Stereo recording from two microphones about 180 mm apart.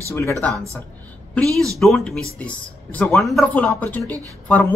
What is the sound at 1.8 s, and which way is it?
Speech, centre (ahead or behind).